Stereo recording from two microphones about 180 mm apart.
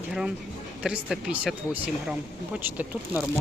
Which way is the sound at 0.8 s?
5° right (ahead or behind).